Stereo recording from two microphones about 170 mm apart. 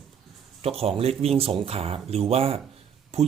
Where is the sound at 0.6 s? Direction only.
35° right (ahead or behind).